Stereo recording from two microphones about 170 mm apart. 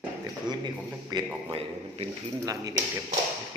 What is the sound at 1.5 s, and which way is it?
Speech, 35° right (ahead or behind).